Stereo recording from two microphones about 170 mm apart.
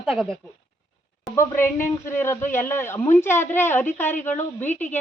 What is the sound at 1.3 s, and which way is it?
Speech, 15° left (ahead or behind).